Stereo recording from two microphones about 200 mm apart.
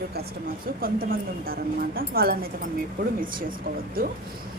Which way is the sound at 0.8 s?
45° right (ahead or behind).